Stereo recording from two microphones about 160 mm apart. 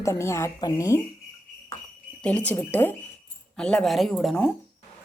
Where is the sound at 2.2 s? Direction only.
10° left (ahead or behind).